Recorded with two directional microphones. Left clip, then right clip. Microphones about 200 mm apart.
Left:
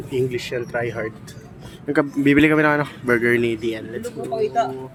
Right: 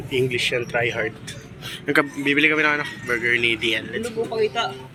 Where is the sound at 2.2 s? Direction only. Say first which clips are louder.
Left 5 dB; 45° left (ahead or behind); by 4.1 s 30° left (ahead or behind).